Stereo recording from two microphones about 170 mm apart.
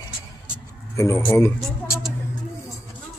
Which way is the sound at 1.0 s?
15° left (ahead or behind).